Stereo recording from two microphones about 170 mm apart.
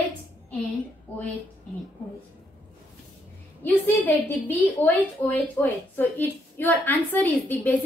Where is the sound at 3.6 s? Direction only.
10° left (ahead or behind).